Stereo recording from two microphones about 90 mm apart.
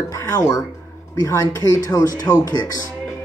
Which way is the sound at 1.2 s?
35° left (ahead or behind).